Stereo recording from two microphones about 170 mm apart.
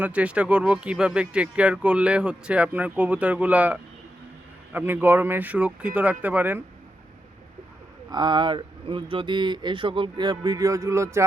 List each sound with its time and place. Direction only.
0.0 s speech: 10° right (ahead or behind)
8.1 s speech: 25° right (ahead or behind)